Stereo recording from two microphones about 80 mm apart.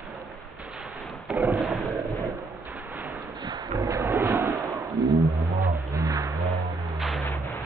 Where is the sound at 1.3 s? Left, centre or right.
Centre.